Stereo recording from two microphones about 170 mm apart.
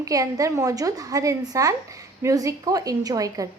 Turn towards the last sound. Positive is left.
turn(degrees=-20)  # may be behind; listen again after turning